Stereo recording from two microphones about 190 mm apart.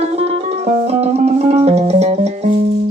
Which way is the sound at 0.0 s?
30° right (ahead or behind).